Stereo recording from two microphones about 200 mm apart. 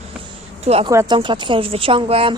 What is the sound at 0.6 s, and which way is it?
Speech, 30° right (ahead or behind).